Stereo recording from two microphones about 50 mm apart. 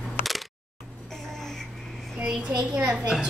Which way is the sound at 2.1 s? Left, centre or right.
Centre.